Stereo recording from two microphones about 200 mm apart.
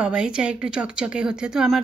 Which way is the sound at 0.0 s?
5° right (ahead or behind).